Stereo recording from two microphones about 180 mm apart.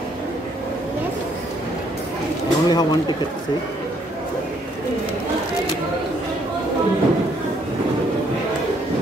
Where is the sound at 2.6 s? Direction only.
25° left (ahead or behind).